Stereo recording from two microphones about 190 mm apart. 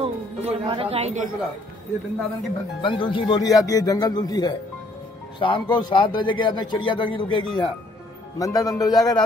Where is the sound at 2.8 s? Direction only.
25° left (ahead or behind).